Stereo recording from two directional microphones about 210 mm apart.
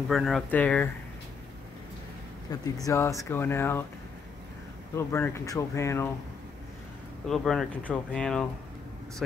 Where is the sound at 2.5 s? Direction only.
15° left (ahead or behind).